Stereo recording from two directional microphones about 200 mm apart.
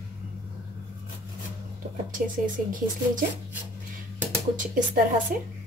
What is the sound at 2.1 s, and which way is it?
A woman's voice, 40° right (ahead or behind).